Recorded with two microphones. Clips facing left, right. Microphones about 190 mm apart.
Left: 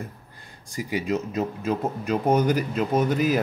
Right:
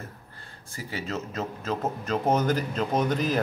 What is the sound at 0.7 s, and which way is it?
Speech, 15° left (ahead or behind).